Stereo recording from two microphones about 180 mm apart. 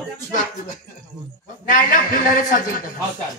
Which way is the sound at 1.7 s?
50° left (ahead or behind).